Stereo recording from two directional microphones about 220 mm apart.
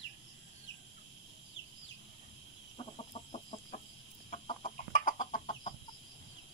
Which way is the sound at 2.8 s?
25° left (ahead or behind).